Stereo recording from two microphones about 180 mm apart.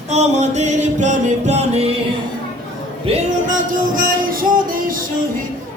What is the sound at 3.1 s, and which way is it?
Music, 45° right (ahead or behind).